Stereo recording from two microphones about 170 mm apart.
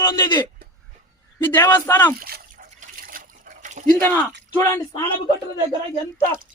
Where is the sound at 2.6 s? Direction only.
50° right (ahead or behind).